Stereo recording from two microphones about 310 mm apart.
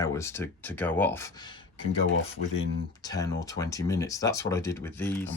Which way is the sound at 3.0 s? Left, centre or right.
Centre.